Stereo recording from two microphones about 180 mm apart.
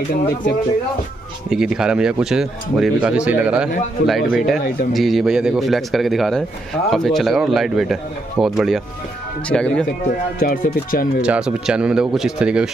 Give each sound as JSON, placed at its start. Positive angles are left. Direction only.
{"t": 1.5, "sound": "a man's voice", "side_deg": -5}
{"t": 10.4, "sound": "speech", "side_deg": 50}
{"t": 11.2, "sound": "a man's voice", "side_deg": -5}